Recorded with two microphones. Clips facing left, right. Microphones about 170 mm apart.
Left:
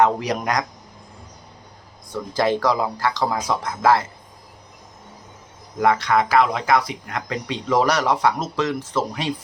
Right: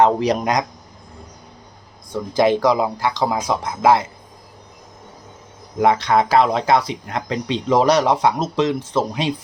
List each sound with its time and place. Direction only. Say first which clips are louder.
0.0 s speech: right 3 dB; 25° right (ahead or behind)
2.3 s speech: right 4 dB; 15° right (ahead or behind)
5.8 s speech: right 2 dB; 20° right (ahead or behind)